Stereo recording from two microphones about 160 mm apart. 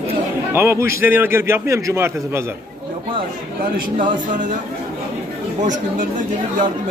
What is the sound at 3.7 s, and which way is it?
Speech, 55° right (ahead or behind).